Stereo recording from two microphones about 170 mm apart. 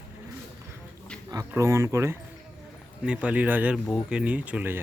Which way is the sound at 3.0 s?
5° right (ahead or behind).